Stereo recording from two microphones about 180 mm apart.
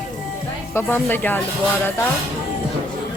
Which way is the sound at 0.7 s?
15° left (ahead or behind).